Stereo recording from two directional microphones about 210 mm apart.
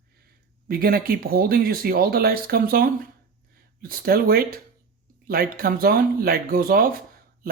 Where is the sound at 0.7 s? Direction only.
45° right (ahead or behind).